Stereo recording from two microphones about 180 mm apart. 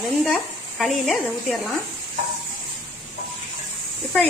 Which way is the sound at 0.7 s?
Centre (ahead or behind).